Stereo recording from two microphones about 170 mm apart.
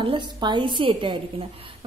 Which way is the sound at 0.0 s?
25° right (ahead or behind).